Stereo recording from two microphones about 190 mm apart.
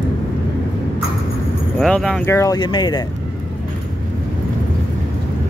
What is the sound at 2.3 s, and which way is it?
Speech, 20° left (ahead or behind).